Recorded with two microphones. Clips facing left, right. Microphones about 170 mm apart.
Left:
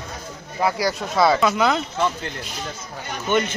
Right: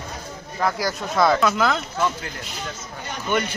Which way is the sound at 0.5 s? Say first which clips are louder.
Left 2 dB; 5° left (ahead or behind).